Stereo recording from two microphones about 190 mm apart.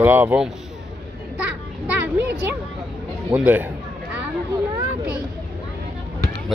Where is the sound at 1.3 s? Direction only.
5° right (ahead or behind).